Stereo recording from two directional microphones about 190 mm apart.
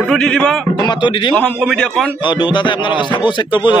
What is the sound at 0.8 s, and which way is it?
Speech, 25° left (ahead or behind).